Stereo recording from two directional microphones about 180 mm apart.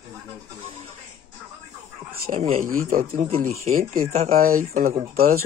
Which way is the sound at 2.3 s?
40° right (ahead or behind).